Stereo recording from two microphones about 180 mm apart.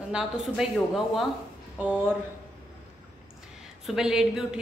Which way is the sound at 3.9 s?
5° right (ahead or behind).